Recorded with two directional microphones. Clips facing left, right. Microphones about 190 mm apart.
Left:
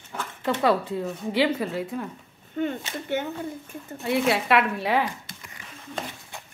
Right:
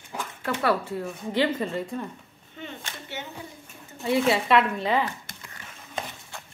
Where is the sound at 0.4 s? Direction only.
15° left (ahead or behind).